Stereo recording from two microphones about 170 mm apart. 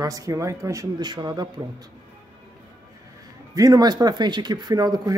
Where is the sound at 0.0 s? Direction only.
20° right (ahead or behind).